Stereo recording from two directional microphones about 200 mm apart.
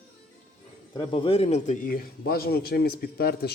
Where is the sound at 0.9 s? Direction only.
25° left (ahead or behind); by 3.5 s 50° left (ahead or behind).